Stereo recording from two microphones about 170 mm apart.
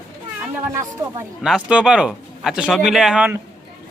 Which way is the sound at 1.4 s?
5° right (ahead or behind).